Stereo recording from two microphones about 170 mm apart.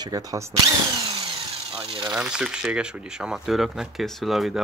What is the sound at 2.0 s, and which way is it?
Speech, 5° right (ahead or behind).